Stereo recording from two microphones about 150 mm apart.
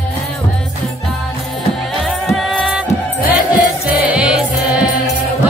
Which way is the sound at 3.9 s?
10° right (ahead or behind).